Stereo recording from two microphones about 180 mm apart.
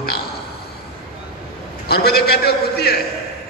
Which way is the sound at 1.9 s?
60° left (ahead or behind).